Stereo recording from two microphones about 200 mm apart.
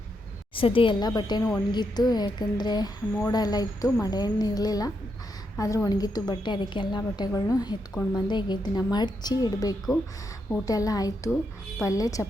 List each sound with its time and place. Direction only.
0.5 s a woman's voice: 25° left (ahead or behind)